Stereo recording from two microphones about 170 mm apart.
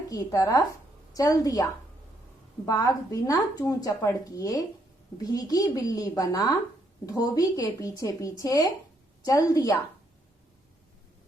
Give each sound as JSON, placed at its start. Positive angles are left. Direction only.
{"t": 0.1, "sound": "a woman's voice", "side_deg": 20}
{"t": 2.6, "sound": "a woman's voice", "side_deg": 20}